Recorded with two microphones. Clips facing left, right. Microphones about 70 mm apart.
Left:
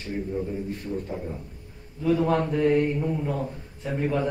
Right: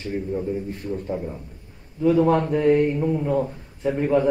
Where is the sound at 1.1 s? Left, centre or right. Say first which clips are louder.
Right 4 dB; centre.